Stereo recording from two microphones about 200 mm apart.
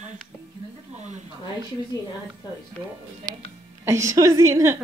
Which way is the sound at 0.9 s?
35° right (ahead or behind).